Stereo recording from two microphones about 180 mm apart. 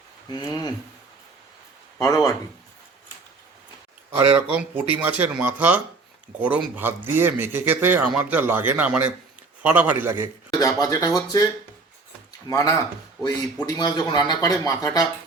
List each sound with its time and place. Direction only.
0.3 s speech: 25° left (ahead or behind)
2.0 s speech: 20° left (ahead or behind)
4.1 s a man's voice: 15° right (ahead or behind)
10.5 s speech: 20° left (ahead or behind)
12.5 s speech: 20° left (ahead or behind)